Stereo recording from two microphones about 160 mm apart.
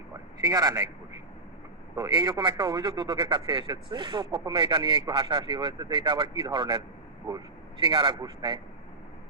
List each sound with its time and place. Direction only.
0.4 s speech: 20° right (ahead or behind)
2.0 s speech: 20° right (ahead or behind)
7.9 s speech: 30° right (ahead or behind)